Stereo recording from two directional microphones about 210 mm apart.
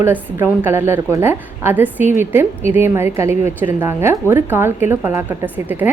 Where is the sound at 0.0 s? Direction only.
10° right (ahead or behind).